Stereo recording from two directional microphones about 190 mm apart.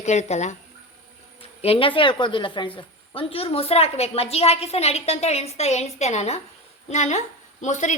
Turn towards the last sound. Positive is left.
turn(degrees=40)  # may be behind; listen again after turning